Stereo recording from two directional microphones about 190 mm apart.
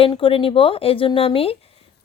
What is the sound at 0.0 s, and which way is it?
Speech, 30° left (ahead or behind).